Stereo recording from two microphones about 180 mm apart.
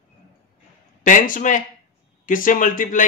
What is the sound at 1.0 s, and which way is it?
A man's voice, 45° left (ahead or behind).